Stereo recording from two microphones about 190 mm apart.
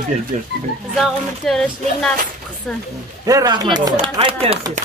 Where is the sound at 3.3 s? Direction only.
20° right (ahead or behind).